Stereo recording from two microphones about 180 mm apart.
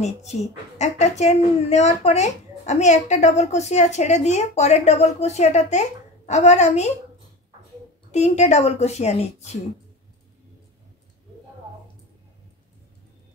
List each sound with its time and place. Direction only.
0.0 s a woman's voice: 40° left (ahead or behind)
8.1 s a woman's voice: 40° left (ahead or behind)